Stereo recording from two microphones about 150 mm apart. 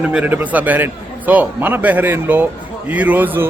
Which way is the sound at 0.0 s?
5° right (ahead or behind).